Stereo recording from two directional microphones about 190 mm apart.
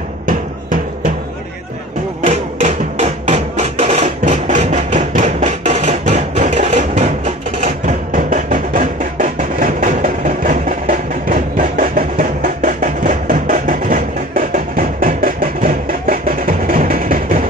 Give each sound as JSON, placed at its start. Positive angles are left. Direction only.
{"t": 0.3, "sound": "music", "side_deg": -45}
{"t": 2.2, "sound": "music", "side_deg": -35}